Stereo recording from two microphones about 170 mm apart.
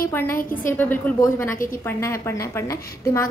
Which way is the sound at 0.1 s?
15° left (ahead or behind).